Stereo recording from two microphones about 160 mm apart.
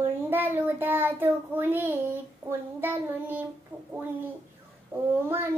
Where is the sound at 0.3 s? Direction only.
10° right (ahead or behind).